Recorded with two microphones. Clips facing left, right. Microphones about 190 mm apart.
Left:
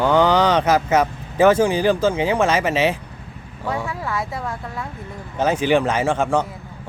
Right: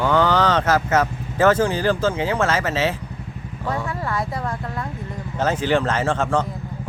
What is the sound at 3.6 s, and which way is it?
Speech, centre (ahead or behind).